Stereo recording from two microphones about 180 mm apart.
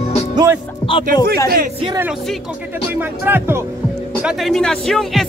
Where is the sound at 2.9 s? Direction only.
10° right (ahead or behind).